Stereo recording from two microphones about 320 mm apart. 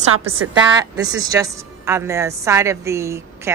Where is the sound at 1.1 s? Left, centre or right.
Centre.